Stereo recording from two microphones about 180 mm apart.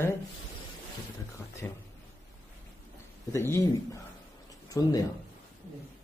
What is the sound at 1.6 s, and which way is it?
Speech, 10° left (ahead or behind).